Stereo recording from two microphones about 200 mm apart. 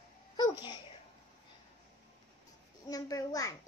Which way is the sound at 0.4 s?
20° left (ahead or behind).